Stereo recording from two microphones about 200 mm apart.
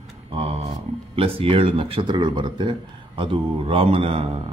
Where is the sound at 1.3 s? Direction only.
25° right (ahead or behind).